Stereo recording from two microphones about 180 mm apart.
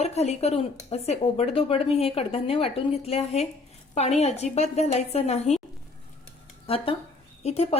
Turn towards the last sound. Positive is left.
turn(degrees=35)  # may be behind; listen again after turning